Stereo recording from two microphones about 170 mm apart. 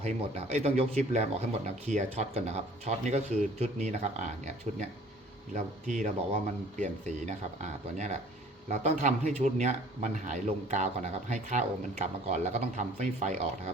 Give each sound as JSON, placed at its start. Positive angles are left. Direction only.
{"t": 0.0, "sound": "speech", "side_deg": -40}
{"t": 5.5, "sound": "speech", "side_deg": -45}